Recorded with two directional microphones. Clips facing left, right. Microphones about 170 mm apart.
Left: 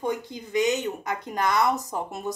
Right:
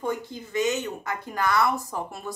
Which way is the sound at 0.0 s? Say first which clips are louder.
Left 1 dB; 15° left (ahead or behind).